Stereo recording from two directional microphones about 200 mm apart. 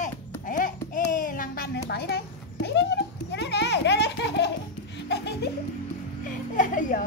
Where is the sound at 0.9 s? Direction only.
40° left (ahead or behind); by 4.5 s 60° left (ahead or behind).